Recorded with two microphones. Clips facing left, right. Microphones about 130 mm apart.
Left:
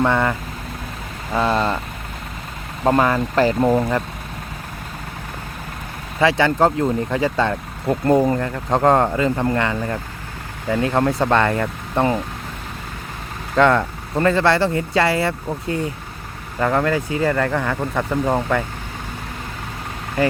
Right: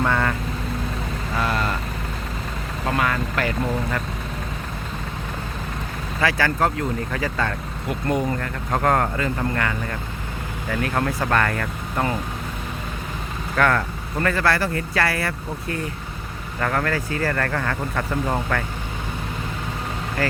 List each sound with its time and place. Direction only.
0.0 s speech: 20° left (ahead or behind)
1.4 s vehicle: 25° left (ahead or behind)
2.8 s speech: 35° left (ahead or behind)
6.1 s speech: 25° left (ahead or behind)
13.6 s speech: 20° left (ahead or behind)
20.2 s speech: 20° left (ahead or behind)